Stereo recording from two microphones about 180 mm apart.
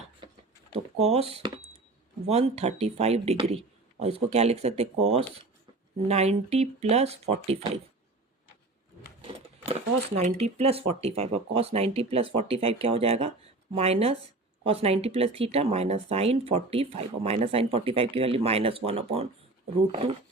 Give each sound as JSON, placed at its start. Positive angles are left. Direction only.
{"t": 0.2, "sound": "a sound", "side_deg": -25}
{"t": 2.2, "sound": "speech", "side_deg": -35}
{"t": 10.2, "sound": "speech", "side_deg": -35}